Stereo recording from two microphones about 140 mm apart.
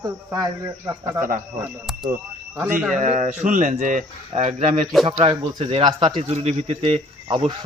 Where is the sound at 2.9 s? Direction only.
60° right (ahead or behind).